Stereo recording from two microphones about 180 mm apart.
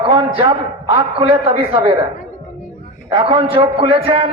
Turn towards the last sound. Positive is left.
turn(degrees=-30)  # may be behind; listen again after turning